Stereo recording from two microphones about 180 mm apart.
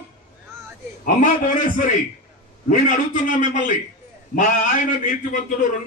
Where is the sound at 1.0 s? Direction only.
45° left (ahead or behind).